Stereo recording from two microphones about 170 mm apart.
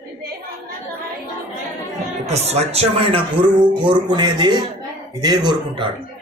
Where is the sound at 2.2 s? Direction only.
40° right (ahead or behind).